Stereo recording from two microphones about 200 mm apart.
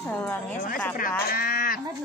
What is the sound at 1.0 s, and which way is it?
Livestock, 45° left (ahead or behind).